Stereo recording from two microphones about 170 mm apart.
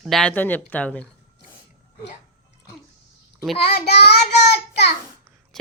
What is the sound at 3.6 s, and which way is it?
Speech, 70° left (ahead or behind).